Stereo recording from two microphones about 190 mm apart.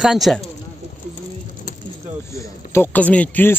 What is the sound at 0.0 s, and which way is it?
Speech, centre (ahead or behind).